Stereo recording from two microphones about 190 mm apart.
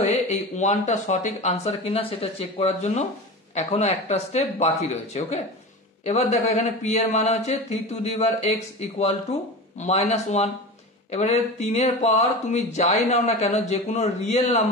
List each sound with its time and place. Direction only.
0.0 s speech: 40° left (ahead or behind)